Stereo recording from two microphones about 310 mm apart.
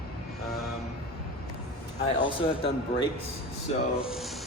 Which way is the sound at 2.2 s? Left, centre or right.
Centre.